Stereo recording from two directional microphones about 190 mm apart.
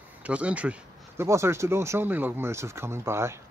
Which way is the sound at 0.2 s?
5° right (ahead or behind).